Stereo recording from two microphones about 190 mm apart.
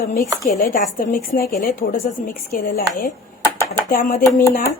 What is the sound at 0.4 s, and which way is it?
A woman's voice, 45° left (ahead or behind).